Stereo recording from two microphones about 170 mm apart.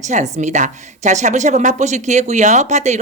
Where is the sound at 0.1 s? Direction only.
45° right (ahead or behind).